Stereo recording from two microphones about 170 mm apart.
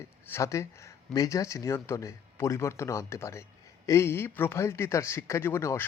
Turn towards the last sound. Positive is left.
turn(degrees=15)  # may be behind; listen again after turning